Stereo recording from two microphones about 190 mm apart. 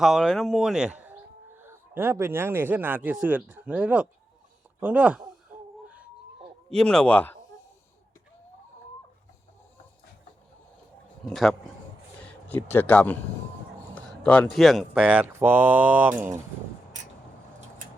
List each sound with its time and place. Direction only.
0.0 s speech: 5° right (ahead or behind)
6.7 s speech: 5° left (ahead or behind)
11.3 s speech: centre (ahead or behind)